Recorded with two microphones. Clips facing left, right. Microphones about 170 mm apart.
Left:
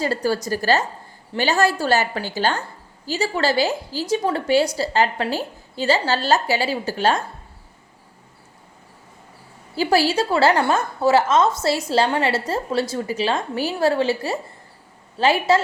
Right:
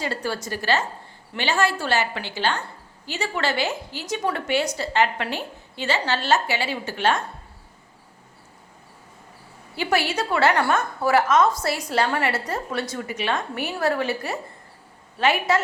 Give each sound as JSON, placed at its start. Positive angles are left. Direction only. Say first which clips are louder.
{"t": 0.0, "sound": "a woman's voice", "louder": "left 6 dB", "side_deg": 40}
{"t": 9.7, "sound": "a woman's voice", "louder": "left 5 dB", "side_deg": 35}